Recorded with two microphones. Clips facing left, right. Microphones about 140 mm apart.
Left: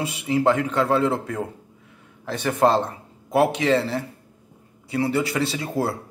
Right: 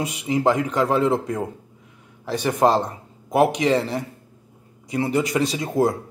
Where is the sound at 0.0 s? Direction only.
15° right (ahead or behind).